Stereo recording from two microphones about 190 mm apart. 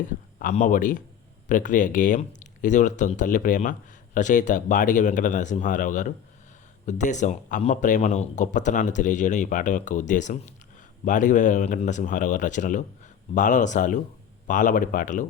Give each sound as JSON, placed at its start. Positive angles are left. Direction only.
{"t": 0.3, "sound": "speech", "side_deg": 45}